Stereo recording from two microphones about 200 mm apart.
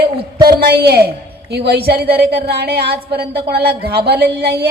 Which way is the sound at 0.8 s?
50° right (ahead or behind).